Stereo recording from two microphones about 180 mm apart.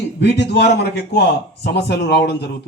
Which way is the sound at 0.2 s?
70° left (ahead or behind).